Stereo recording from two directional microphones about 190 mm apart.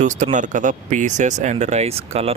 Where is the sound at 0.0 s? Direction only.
40° right (ahead or behind).